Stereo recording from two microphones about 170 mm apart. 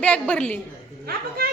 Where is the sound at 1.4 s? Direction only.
60° right (ahead or behind).